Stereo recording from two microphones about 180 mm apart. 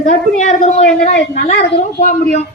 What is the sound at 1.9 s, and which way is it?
Speech, 50° left (ahead or behind).